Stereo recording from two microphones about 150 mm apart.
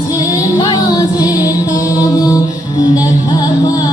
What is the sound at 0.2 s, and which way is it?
Music, 25° left (ahead or behind).